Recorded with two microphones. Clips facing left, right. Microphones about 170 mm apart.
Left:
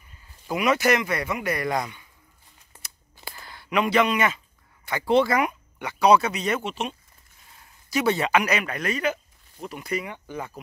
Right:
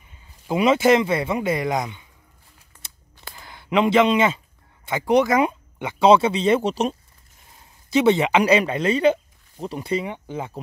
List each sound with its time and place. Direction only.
0.5 s speech: 25° right (ahead or behind)
3.3 s speech: 20° right (ahead or behind); by 7.0 s 40° right (ahead or behind)
7.9 s speech: 20° right (ahead or behind)